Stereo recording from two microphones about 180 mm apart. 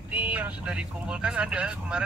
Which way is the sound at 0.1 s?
10° right (ahead or behind).